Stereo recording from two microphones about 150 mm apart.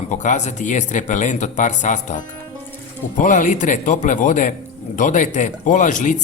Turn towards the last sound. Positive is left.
turn(degrees=55)  # may be behind; listen again after turning